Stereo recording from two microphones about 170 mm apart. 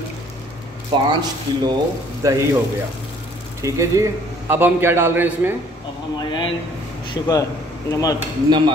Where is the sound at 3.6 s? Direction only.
15° right (ahead or behind).